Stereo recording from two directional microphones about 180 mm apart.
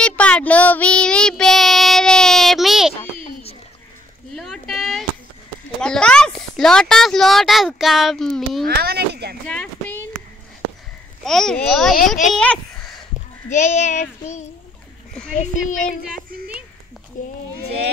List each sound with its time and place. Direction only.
0.0 s child singing: 5° left (ahead or behind)
4.3 s a sound: centre (ahead or behind)
5.8 s speech: 5° left (ahead or behind)
8.6 s a sound: 60° right (ahead or behind)
9.5 s a sound: 5° left (ahead or behind)
11.2 s a child's voice: centre (ahead or behind)
13.5 s child singing: 40° left (ahead or behind)
15.3 s a child's voice: 45° left (ahead or behind)
17.2 s a child's voice: 45° left (ahead or behind)